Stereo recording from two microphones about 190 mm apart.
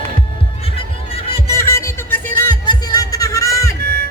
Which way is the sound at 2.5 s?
20° left (ahead or behind).